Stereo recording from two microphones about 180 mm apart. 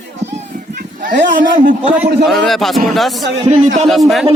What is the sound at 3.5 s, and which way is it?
Speech, 40° right (ahead or behind).